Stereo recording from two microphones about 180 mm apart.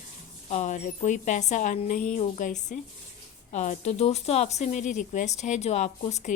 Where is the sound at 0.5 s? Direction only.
40° left (ahead or behind).